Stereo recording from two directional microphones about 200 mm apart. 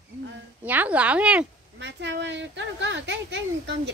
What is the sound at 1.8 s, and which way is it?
Speech, 65° right (ahead or behind).